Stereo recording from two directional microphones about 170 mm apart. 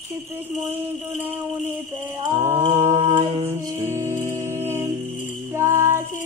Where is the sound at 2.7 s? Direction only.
20° right (ahead or behind).